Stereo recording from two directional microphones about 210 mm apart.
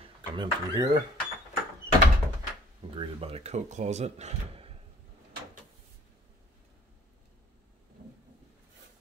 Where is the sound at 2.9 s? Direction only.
25° right (ahead or behind).